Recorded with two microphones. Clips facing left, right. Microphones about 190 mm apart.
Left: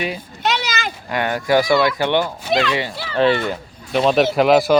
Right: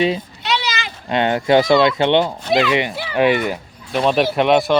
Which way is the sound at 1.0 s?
25° right (ahead or behind).